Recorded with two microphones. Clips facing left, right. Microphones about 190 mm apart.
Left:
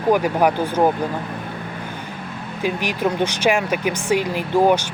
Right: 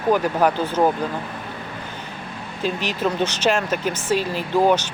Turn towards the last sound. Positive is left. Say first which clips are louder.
# left 2 dB
turn(degrees=15)  # may be behind; listen again after turning